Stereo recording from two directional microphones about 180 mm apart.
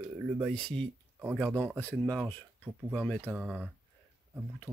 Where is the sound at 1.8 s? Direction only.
10° left (ahead or behind).